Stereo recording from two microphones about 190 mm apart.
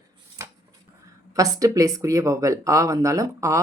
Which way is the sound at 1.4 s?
20° right (ahead or behind).